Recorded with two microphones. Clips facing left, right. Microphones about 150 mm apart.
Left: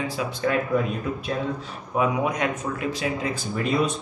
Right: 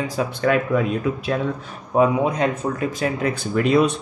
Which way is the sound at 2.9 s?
55° right (ahead or behind).